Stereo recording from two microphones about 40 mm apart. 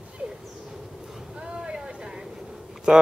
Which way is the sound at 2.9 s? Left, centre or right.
Right.